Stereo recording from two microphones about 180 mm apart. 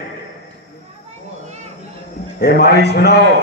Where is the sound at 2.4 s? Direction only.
65° left (ahead or behind).